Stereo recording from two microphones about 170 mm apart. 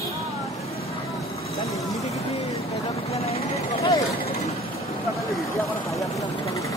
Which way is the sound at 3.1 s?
35° left (ahead or behind).